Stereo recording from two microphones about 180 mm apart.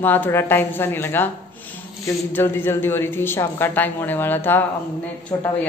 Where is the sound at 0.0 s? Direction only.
10° left (ahead or behind).